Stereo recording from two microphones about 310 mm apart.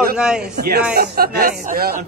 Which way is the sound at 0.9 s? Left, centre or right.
Right.